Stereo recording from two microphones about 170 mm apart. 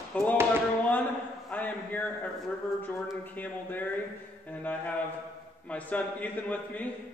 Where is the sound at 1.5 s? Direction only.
10° left (ahead or behind).